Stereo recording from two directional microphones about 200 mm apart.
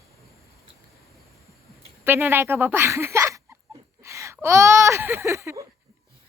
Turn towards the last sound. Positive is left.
turn(degrees=-15)  # may be behind; listen again after turning